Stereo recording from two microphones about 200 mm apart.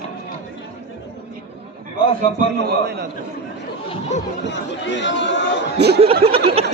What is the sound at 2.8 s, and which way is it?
Speech, 55° right (ahead or behind).